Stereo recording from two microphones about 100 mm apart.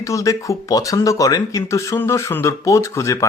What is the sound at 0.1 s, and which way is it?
Speech, 30° left (ahead or behind).